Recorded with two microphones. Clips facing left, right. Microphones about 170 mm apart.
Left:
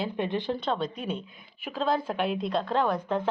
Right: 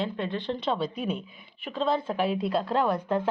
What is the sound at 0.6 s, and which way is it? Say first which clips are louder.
A woman's voice: right 1 dB; 5° right (ahead or behind).